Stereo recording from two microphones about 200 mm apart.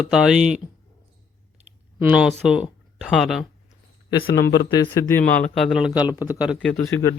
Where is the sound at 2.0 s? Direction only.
5° right (ahead or behind).